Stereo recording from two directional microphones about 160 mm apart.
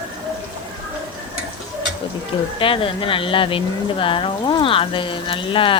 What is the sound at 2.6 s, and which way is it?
Speech, 35° left (ahead or behind).